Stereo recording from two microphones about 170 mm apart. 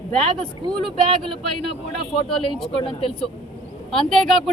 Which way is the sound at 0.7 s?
Centre (ahead or behind).